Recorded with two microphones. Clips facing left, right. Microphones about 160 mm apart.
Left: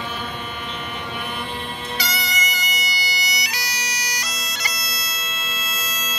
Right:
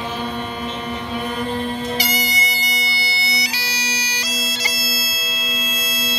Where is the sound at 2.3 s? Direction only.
30° right (ahead or behind).